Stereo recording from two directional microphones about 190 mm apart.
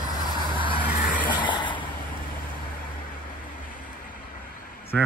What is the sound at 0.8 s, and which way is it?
Vehicle, 45° left (ahead or behind).